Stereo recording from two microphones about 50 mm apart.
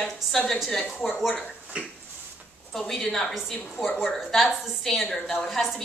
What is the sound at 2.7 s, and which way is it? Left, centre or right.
A woman's voice, centre.